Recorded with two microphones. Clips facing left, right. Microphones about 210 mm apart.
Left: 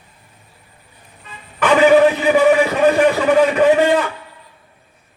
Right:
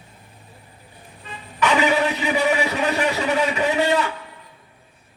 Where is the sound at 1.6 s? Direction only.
50° left (ahead or behind).